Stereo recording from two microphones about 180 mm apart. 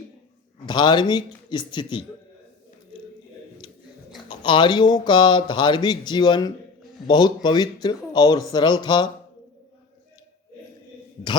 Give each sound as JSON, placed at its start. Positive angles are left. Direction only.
{"t": 0.6, "sound": "speech", "side_deg": 25}
{"t": 3.6, "sound": "a sound", "side_deg": 25}
{"t": 4.3, "sound": "speech", "side_deg": 25}